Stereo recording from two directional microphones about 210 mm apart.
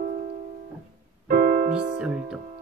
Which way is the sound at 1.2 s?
45° right (ahead or behind).